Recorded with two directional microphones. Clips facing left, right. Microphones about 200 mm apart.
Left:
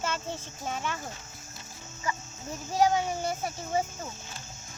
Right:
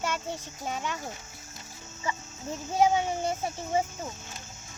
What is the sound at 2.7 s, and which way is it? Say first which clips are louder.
Speech: right 1 dB; 25° right (ahead or behind).